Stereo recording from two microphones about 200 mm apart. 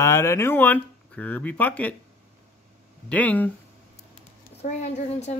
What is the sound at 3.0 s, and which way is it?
Speech, 5° left (ahead or behind).